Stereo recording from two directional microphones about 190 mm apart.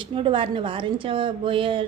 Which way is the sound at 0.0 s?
25° right (ahead or behind).